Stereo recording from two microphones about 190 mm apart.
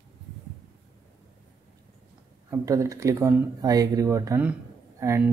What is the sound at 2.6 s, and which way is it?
Speech, 15° right (ahead or behind).